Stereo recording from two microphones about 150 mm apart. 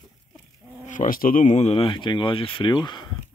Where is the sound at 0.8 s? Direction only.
60° left (ahead or behind); by 3.1 s 30° left (ahead or behind).